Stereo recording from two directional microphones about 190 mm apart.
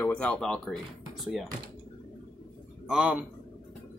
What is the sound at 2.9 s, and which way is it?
Speech, 5° right (ahead or behind).